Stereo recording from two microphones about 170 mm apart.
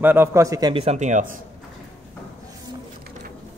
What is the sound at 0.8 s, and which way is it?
Speech, 40° right (ahead or behind).